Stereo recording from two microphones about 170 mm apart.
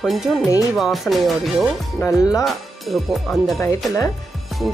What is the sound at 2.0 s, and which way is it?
Speech, 15° left (ahead or behind).